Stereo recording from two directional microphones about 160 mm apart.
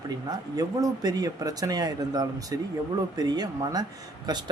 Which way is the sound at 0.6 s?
20° right (ahead or behind).